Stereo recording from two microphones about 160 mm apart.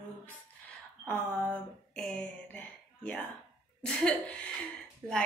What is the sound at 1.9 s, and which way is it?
A woman's voice, 5° left (ahead or behind).